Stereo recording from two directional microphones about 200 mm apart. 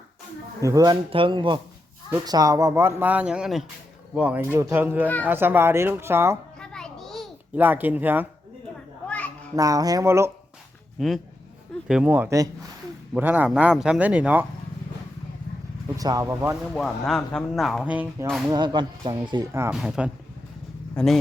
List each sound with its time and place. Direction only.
0.6 s speech: 15° right (ahead or behind)
6.6 s a sound: 5° left (ahead or behind)
7.6 s speech: 10° right (ahead or behind)
9.0 s a sound: 5° left (ahead or behind)
9.6 s speech: 15° right (ahead or behind)
11.9 s speech: 5° right (ahead or behind)
16.0 s speech: 20° right (ahead or behind)
16.7 s speech: centre (ahead or behind)
18.5 s speech: 20° right (ahead or behind)
19.7 s speech: 5° right (ahead or behind)